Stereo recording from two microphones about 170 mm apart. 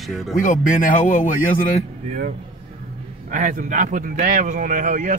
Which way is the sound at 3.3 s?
50° right (ahead or behind).